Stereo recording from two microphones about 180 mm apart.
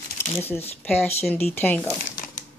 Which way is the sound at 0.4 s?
10° left (ahead or behind).